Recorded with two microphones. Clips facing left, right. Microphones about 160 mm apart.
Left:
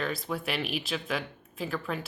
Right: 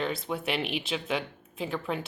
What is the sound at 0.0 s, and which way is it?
Speech, 25° right (ahead or behind).